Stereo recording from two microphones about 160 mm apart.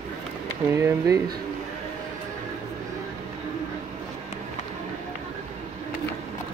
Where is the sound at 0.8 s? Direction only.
20° right (ahead or behind).